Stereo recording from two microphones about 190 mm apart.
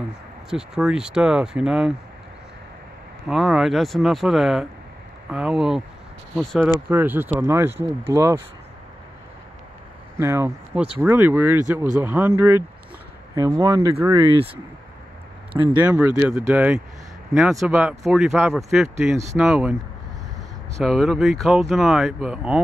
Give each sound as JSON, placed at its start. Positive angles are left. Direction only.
{"t": 0.5, "sound": "speech", "side_deg": -5}
{"t": 3.3, "sound": "speech", "side_deg": 0}
{"t": 6.9, "sound": "speech", "side_deg": -10}
{"t": 10.1, "sound": "speech", "side_deg": -15}
{"t": 15.8, "sound": "speech", "side_deg": -10}
{"t": 20.8, "sound": "speech", "side_deg": 0}